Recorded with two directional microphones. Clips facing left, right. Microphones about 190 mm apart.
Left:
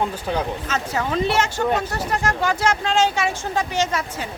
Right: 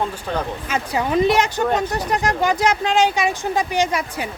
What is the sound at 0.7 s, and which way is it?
Speech, 15° right (ahead or behind).